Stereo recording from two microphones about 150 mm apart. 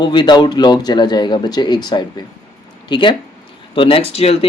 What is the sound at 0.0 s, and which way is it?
Speech, 30° left (ahead or behind).